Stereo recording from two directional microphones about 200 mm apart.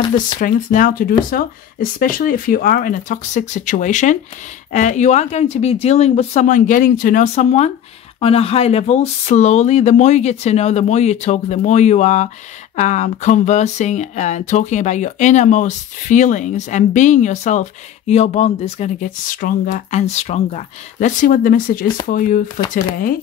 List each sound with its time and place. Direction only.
0.4 s speech: 40° left (ahead or behind)